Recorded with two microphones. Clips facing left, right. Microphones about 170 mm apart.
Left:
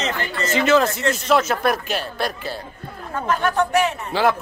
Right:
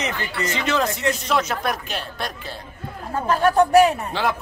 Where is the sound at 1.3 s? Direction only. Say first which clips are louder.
Left 8 dB; centre (ahead or behind).